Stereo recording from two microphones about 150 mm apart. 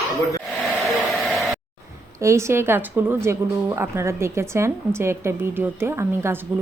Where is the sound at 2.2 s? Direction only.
20° right (ahead or behind).